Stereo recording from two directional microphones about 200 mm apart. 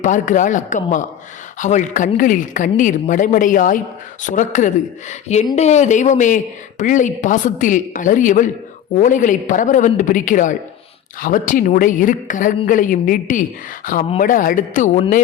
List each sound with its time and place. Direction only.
0.0 s speech: 40° left (ahead or behind)